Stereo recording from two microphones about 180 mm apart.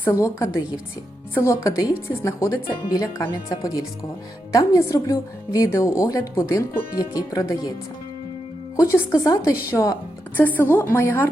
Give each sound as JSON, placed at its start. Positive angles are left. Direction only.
{"t": 0.0, "sound": "a woman's voice", "side_deg": 15}
{"t": 8.7, "sound": "speech", "side_deg": 15}